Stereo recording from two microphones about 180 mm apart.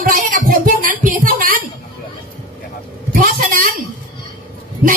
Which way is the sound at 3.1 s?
50° right (ahead or behind).